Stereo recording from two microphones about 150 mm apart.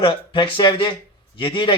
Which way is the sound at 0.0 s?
35° left (ahead or behind).